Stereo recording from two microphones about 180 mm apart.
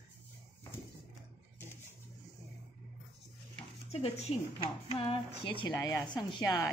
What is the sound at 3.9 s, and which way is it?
A woman's voice, 35° left (ahead or behind).